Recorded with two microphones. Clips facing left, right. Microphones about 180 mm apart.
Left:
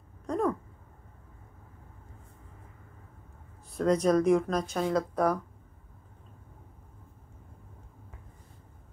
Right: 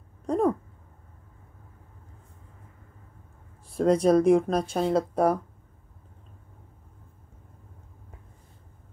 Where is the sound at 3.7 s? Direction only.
30° right (ahead or behind).